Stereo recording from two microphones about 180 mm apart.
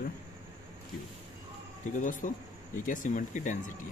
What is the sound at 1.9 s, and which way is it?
Speech, 45° left (ahead or behind).